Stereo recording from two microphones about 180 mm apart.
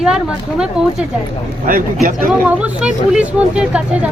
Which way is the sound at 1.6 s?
50° right (ahead or behind).